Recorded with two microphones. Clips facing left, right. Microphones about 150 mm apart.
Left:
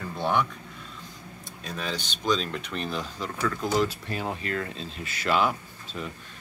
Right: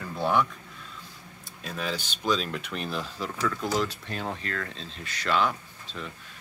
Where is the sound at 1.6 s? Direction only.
5° right (ahead or behind).